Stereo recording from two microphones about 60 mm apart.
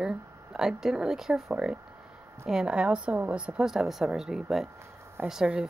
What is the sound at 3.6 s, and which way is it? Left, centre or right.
A woman's voice, centre.